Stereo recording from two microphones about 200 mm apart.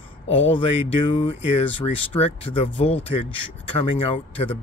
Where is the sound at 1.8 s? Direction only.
30° left (ahead or behind).